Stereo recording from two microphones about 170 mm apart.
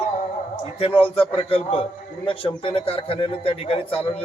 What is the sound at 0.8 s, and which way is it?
A man's voice, 30° left (ahead or behind).